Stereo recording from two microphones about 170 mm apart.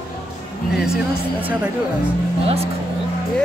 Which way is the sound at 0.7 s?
5° right (ahead or behind).